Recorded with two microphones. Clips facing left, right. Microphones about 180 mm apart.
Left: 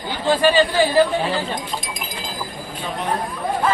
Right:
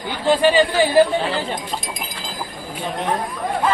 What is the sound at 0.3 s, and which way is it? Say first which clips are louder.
Speech: right 1 dB; 15° right (ahead or behind).